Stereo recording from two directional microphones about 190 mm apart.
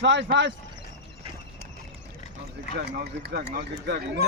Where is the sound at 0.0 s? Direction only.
70° right (ahead or behind).